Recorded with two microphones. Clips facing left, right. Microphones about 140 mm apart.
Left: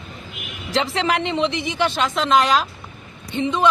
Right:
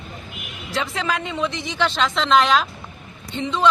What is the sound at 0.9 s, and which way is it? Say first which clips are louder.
Speech: left 4 dB; 75° left (ahead or behind).